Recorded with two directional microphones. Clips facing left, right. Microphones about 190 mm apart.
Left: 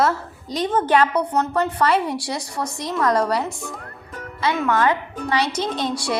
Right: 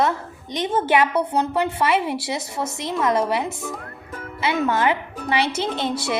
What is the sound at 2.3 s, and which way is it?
A woman's voice, 20° right (ahead or behind).